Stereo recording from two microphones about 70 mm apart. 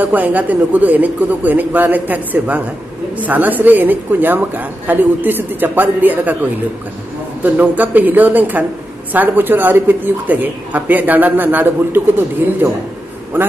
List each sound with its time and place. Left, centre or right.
0.0 s speech: right